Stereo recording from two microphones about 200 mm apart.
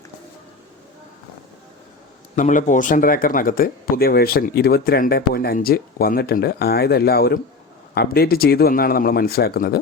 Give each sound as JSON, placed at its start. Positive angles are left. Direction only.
{"t": 2.3, "sound": "speech", "side_deg": 40}